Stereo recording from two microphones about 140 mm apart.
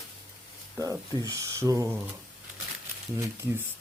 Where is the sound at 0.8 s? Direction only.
25° right (ahead or behind).